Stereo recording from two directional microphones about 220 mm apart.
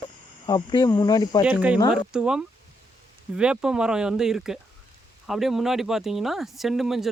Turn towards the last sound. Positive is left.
turn(degrees=0)  # may be behind; listen again after turning